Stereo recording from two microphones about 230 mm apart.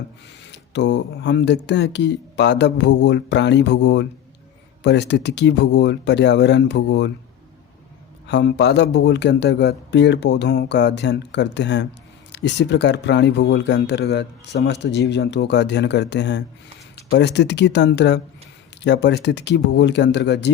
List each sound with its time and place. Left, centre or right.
0.5 s speech: left
8.3 s speech: left